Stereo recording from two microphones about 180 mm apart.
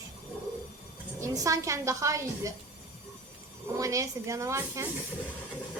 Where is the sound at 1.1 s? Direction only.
20° right (ahead or behind).